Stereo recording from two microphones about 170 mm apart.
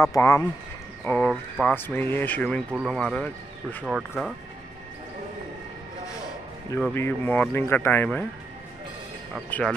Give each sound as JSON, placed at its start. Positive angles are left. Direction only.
{"t": 0.0, "sound": "speech", "side_deg": 20}
{"t": 1.0, "sound": "speech", "side_deg": 10}
{"t": 6.9, "sound": "speech", "side_deg": 10}
{"t": 9.5, "sound": "speech", "side_deg": 5}